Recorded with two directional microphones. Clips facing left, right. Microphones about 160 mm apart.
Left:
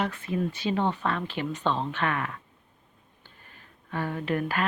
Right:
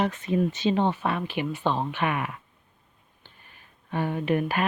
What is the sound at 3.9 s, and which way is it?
Speech, 20° right (ahead or behind).